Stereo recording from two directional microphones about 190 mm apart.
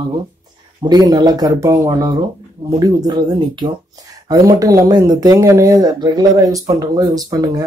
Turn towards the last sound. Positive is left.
turn(degrees=-20)  # may be behind; listen again after turning